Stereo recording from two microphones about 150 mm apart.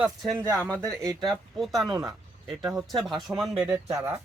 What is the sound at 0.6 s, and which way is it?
Speech, 5° left (ahead or behind).